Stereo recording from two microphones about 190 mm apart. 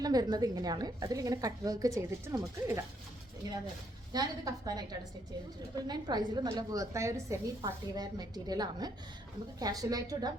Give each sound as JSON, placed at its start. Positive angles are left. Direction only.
{"t": 0.0, "sound": "a woman's voice", "side_deg": -20}